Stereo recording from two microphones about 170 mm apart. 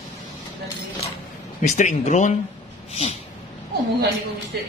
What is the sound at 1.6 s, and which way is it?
Speech, 45° left (ahead or behind).